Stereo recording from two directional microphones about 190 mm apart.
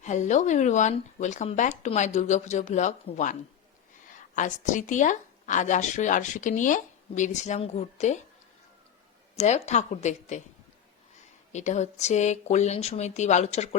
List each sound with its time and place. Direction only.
0.0 s speech: 40° left (ahead or behind)
4.4 s speech: 40° left (ahead or behind)
9.3 s speech: 35° left (ahead or behind)
11.5 s speech: 40° left (ahead or behind)